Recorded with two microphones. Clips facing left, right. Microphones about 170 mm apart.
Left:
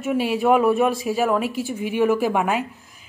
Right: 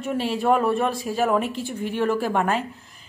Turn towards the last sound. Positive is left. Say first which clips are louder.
# left 1 dB
turn(degrees=5)  # may be behind; listen again after turning